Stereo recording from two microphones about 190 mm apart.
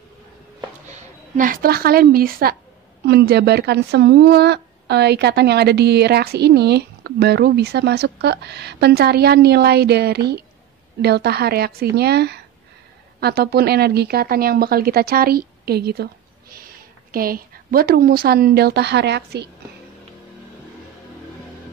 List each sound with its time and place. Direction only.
1.3 s a woman's voice: 45° right (ahead or behind); by 19.5 s 60° right (ahead or behind)